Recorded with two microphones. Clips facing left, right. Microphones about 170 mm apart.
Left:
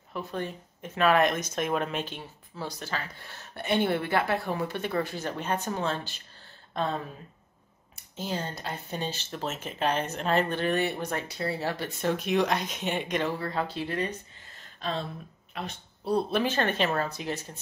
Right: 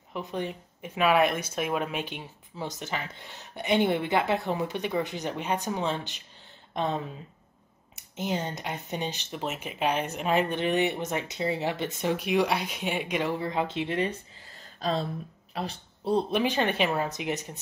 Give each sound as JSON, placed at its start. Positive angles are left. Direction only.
{"t": 0.1, "sound": "speech", "side_deg": -15}
{"t": 14.8, "sound": "speech", "side_deg": -35}